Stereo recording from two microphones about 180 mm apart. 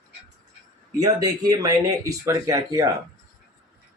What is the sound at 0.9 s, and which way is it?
Speech, 20° right (ahead or behind).